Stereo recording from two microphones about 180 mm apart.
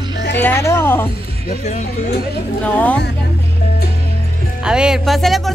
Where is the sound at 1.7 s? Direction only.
40° left (ahead or behind).